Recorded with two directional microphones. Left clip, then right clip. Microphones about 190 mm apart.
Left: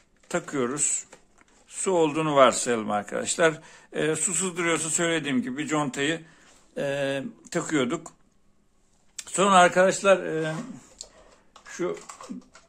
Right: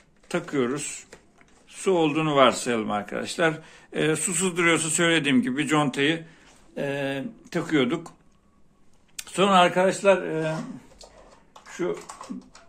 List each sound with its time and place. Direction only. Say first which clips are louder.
0.3 s speech: right 2 dB; 30° left (ahead or behind)
9.1 s speech: even; 30° left (ahead or behind); by 10.5 s 55° left (ahead or behind)